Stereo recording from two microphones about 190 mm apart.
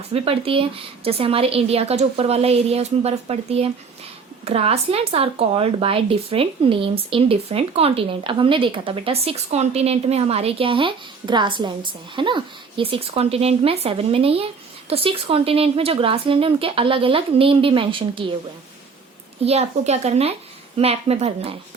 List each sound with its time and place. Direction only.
0.1 s a woman's voice: 30° right (ahead or behind)
19.5 s a woman's voice: 35° right (ahead or behind)